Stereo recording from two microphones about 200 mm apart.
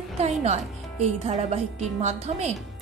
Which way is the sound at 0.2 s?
30° right (ahead or behind).